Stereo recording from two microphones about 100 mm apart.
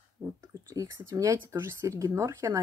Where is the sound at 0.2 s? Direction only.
35° right (ahead or behind).